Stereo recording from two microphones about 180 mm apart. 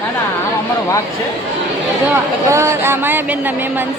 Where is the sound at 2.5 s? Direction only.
15° right (ahead or behind).